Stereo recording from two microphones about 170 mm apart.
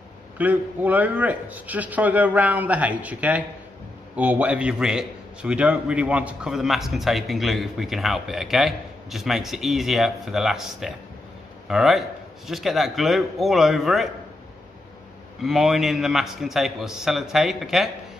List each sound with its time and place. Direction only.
0.4 s a man's voice: 10° right (ahead or behind)
15.4 s a man's voice: centre (ahead or behind)